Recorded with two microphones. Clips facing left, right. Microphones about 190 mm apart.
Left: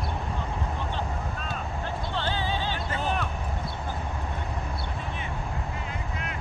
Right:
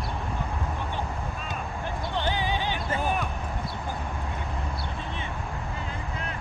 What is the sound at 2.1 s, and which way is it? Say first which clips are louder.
Music: right 2 dB; 15° right (ahead or behind).